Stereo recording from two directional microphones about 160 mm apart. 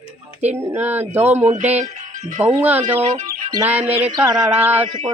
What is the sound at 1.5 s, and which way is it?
Music, 50° right (ahead or behind).